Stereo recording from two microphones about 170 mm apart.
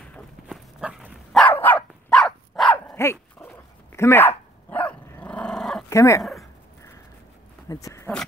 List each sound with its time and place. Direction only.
0.5 s dog: 5° right (ahead or behind)
1.4 s dog: 10° left (ahead or behind)
3.9 s speech: 15° left (ahead or behind)
4.6 s dog: 10° left (ahead or behind)
5.9 s speech: 15° left (ahead or behind)
7.6 s a sound: 20° left (ahead or behind)